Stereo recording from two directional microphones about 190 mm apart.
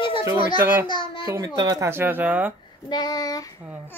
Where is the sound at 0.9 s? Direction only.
25° left (ahead or behind).